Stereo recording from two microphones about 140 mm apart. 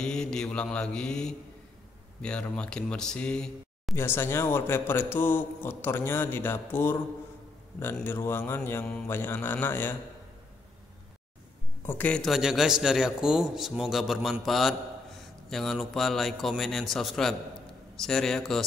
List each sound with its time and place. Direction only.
0.0 s a man's voice: 5° left (ahead or behind)
3.9 s speech: 20° left (ahead or behind)
8.0 s speech: 15° left (ahead or behind)
11.8 s speech: 10° left (ahead or behind)
12.2 s a man's voice: 5° right (ahead or behind)